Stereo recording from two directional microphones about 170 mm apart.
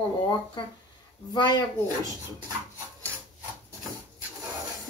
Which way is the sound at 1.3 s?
25° left (ahead or behind).